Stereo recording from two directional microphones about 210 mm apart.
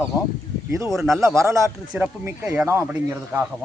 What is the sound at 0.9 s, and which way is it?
Speech, centre (ahead or behind).